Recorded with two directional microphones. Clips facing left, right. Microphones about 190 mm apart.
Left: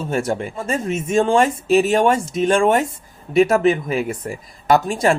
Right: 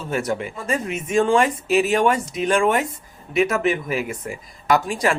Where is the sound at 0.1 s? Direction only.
30° left (ahead or behind).